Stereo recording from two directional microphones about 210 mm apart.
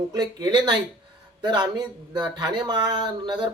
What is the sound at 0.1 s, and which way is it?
Speech, 20° right (ahead or behind).